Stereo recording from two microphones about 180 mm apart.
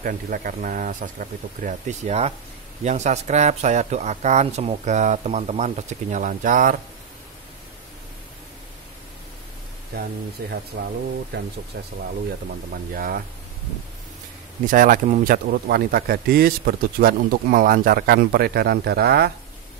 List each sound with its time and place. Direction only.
0.0 s a man's voice: 50° right (ahead or behind)
10.4 s speech: 60° right (ahead or behind)
12.7 s speech: 55° right (ahead or behind)
14.7 s speech: 50° right (ahead or behind)
15.2 s speech: 60° right (ahead or behind)